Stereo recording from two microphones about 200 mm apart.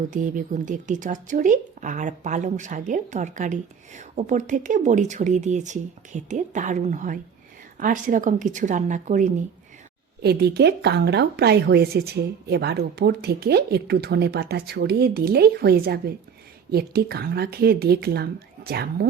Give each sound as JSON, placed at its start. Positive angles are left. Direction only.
{"t": 0.1, "sound": "speech", "side_deg": -40}
{"t": 10.2, "sound": "speech", "side_deg": -55}